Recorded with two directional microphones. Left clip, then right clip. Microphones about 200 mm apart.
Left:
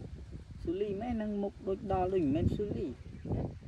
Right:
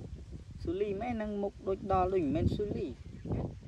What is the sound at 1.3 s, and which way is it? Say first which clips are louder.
Speech: right 1 dB; 15° right (ahead or behind).